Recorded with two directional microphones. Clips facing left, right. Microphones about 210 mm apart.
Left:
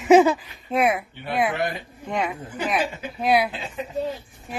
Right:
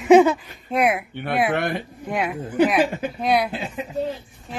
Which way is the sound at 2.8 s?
55° right (ahead or behind).